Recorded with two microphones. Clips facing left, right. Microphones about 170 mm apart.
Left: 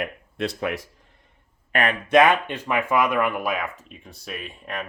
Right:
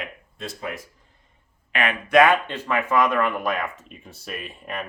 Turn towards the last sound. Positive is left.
turn(degrees=-5)  # may be behind; listen again after turning